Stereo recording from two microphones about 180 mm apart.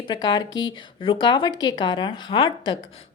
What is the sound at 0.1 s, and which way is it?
A woman's voice, 25° left (ahead or behind).